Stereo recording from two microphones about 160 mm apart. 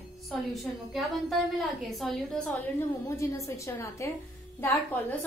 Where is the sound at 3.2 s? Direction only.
20° left (ahead or behind).